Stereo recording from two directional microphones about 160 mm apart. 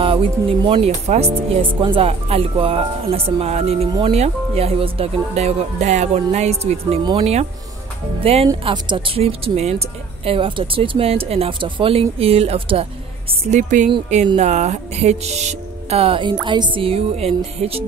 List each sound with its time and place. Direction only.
0.0 s speech: 35° right (ahead or behind)
13.5 s speech: 50° right (ahead or behind)